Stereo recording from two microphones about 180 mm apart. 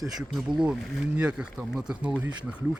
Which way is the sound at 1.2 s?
5° right (ahead or behind).